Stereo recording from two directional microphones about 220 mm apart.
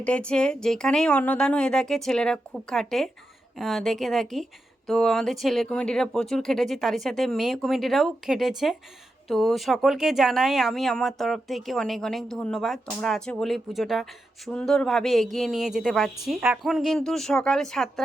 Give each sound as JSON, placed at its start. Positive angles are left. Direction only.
{"t": 0.0, "sound": "speech", "side_deg": 5}